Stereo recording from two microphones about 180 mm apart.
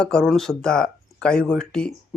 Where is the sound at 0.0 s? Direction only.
5° left (ahead or behind).